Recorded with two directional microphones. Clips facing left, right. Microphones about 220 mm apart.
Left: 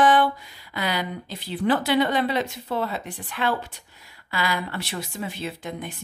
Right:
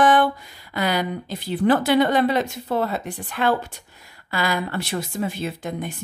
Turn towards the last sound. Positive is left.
turn(degrees=-45)  # may be behind; listen again after turning